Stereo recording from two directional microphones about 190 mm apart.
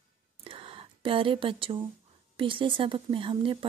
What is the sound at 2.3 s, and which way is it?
Speech, 25° right (ahead or behind).